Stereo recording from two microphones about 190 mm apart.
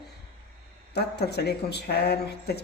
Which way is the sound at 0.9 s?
60° left (ahead or behind).